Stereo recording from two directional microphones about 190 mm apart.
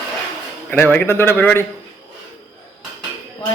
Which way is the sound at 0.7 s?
10° left (ahead or behind).